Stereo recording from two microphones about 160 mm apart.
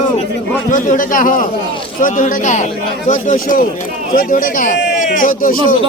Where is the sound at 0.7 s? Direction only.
55° left (ahead or behind).